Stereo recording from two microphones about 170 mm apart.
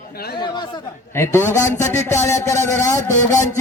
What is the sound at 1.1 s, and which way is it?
A man's voice, 15° left (ahead or behind).